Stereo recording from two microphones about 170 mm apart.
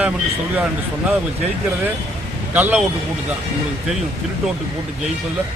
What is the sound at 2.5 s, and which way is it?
Speech, 10° right (ahead or behind).